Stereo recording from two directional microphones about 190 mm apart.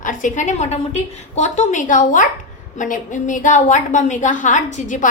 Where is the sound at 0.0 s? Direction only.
45° left (ahead or behind).